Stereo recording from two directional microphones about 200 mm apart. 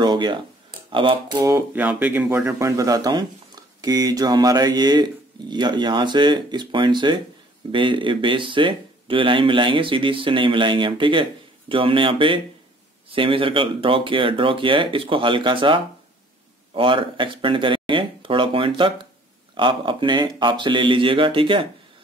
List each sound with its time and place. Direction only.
0.0 s speech: 20° right (ahead or behind)